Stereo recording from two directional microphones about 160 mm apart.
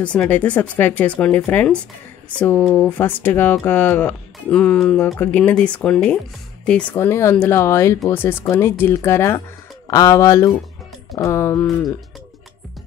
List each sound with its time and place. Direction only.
0.0 s speech: 10° left (ahead or behind)